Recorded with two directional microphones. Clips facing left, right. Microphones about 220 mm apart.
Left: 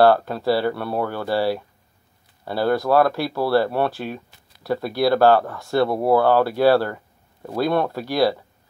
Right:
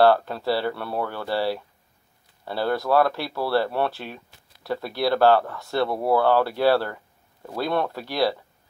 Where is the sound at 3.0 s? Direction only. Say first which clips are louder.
Left 4 dB; 45° left (ahead or behind).